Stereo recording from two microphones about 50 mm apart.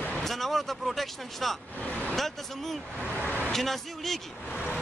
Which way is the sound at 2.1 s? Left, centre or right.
Centre.